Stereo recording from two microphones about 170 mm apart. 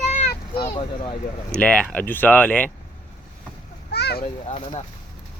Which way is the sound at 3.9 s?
70° left (ahead or behind).